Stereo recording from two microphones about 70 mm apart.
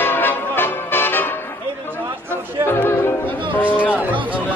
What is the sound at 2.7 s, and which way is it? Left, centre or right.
Music, left.